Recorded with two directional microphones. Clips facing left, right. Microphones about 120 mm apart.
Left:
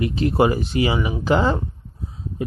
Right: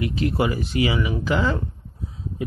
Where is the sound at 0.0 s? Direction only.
30° left (ahead or behind).